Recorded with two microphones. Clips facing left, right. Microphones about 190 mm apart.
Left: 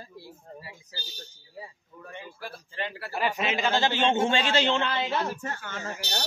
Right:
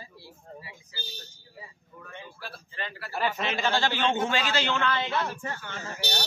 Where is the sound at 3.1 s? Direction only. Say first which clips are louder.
Left 1 dB; 10° left (ahead or behind).